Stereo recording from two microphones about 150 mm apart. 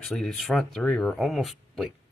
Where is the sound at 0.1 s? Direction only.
Centre (ahead or behind).